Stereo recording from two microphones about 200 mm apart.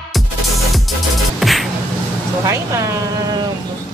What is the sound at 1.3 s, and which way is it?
Music, centre (ahead or behind).